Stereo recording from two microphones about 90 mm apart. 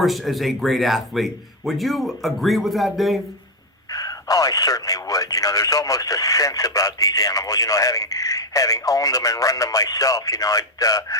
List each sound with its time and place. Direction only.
0.0 s speech: centre (ahead or behind)
3.9 s speech: 45° left (ahead or behind)